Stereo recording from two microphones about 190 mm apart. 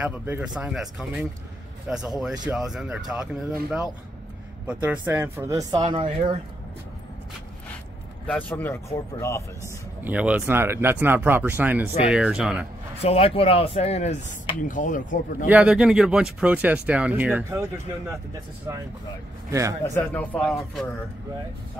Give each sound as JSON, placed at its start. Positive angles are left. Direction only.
{"t": 0.0, "sound": "speech", "side_deg": -10}
{"t": 8.3, "sound": "speech", "side_deg": 10}
{"t": 9.6, "sound": "speech", "side_deg": -10}
{"t": 13.0, "sound": "speech", "side_deg": 30}
{"t": 15.4, "sound": "speech", "side_deg": -5}
{"t": 18.7, "sound": "speech", "side_deg": -15}
{"t": 19.8, "sound": "speech", "side_deg": 10}